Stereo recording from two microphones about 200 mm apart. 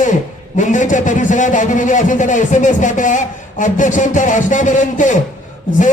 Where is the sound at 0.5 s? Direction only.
40° left (ahead or behind).